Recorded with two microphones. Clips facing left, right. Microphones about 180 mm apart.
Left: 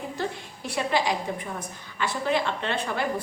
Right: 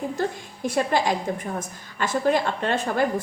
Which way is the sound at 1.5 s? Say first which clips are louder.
Right 3 dB; 45° right (ahead or behind).